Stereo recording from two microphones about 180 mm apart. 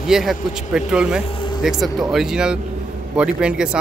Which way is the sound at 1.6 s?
Centre (ahead or behind).